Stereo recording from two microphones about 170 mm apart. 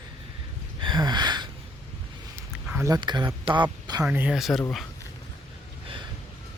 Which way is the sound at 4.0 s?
5° right (ahead or behind).